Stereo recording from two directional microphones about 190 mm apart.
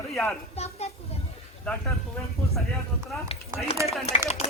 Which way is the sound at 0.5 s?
35° left (ahead or behind).